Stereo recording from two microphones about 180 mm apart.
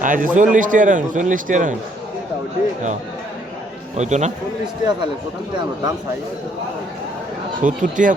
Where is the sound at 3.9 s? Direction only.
40° right (ahead or behind).